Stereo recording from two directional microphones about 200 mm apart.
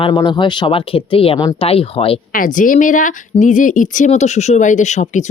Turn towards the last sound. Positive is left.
turn(degrees=35)  # may be behind; listen again after turning